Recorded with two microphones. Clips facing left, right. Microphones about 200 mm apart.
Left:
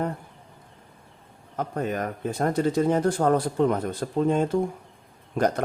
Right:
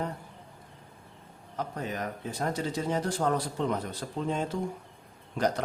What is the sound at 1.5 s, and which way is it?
Speech, 55° left (ahead or behind).